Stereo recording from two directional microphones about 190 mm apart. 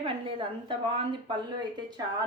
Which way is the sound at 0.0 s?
25° right (ahead or behind).